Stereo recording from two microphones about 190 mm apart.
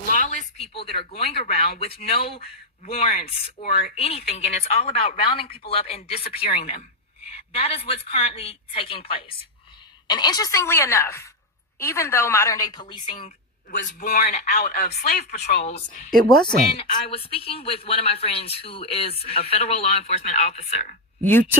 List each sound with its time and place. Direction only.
0.1 s a woman's voice: 40° left (ahead or behind); by 13.3 s 25° left (ahead or behind)
14.0 s speech: 40° left (ahead or behind); by 15.3 s 55° left (ahead or behind)
15.6 s a woman's voice: 35° left (ahead or behind)
16.5 s a woman's voice: 25° left (ahead or behind)